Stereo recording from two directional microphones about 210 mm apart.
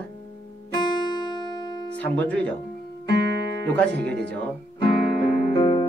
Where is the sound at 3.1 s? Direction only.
55° right (ahead or behind).